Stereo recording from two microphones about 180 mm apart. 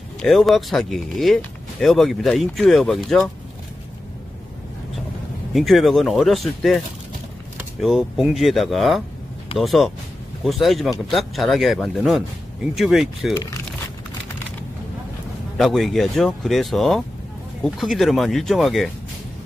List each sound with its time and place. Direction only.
0.2 s speech: centre (ahead or behind)
5.5 s speech: centre (ahead or behind)
7.8 s speech: centre (ahead or behind)
13.3 s speech: 20° left (ahead or behind)
15.5 s speech: centre (ahead or behind)